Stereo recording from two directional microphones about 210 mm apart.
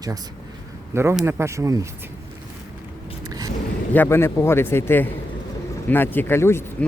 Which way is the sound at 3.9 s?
10° left (ahead or behind).